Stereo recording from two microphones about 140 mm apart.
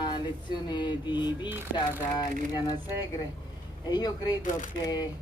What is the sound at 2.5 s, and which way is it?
Speech, 30° left (ahead or behind).